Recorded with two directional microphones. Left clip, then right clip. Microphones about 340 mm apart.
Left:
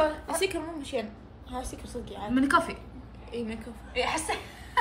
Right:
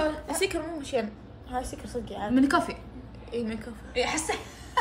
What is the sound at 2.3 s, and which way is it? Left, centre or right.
Speech, centre.